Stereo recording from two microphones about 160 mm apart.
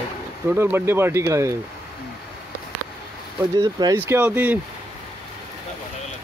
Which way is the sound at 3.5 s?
25° right (ahead or behind).